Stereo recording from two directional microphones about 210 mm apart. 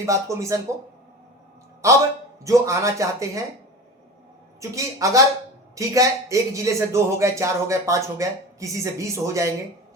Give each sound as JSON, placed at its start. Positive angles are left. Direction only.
{"t": 0.0, "sound": "a man's voice", "side_deg": -15}
{"t": 1.8, "sound": "a man's voice", "side_deg": -15}
{"t": 4.6, "sound": "a man's voice", "side_deg": -15}